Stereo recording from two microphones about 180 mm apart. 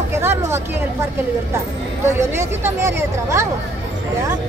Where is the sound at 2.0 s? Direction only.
15° right (ahead or behind).